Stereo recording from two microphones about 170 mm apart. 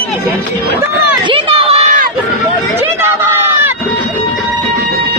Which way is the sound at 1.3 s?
30° right (ahead or behind).